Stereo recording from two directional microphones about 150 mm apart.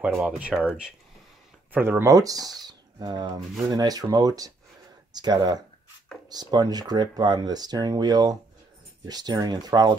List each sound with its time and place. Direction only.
0.0 s speech: 10° right (ahead or behind); by 9.9 s 25° right (ahead or behind)